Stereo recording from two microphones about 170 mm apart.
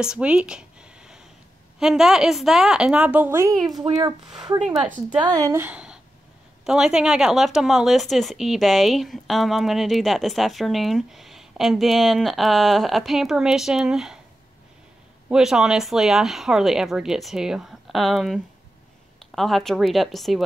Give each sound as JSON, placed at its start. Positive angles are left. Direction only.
{"t": 0.0, "sound": "a sound", "side_deg": -5}
{"t": 1.8, "sound": "a child's voice", "side_deg": 0}
{"t": 4.6, "sound": "speech", "side_deg": -5}
{"t": 5.2, "sound": "speech", "side_deg": -20}
{"t": 15.2, "sound": "speech", "side_deg": -5}